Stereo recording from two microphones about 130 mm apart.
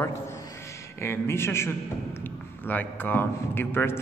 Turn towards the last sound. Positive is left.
turn(degrees=20)  # may be behind; listen again after turning